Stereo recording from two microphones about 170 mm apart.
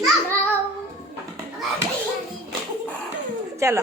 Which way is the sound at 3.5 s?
15° right (ahead or behind).